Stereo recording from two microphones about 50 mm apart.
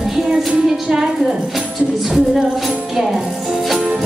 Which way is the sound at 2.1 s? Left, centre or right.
Centre.